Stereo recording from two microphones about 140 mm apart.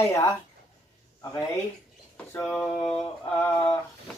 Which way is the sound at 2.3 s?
15° left (ahead or behind).